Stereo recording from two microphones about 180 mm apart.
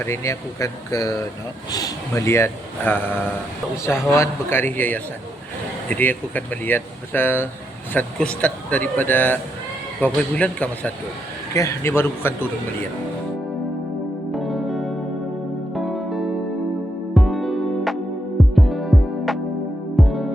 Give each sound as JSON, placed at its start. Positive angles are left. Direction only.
{"t": 0.0, "sound": "speech", "side_deg": 15}
{"t": 4.1, "sound": "speech", "side_deg": 15}
{"t": 14.3, "sound": "music", "side_deg": 0}